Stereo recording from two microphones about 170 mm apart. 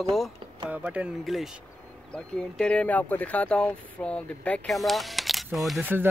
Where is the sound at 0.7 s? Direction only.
10° right (ahead or behind).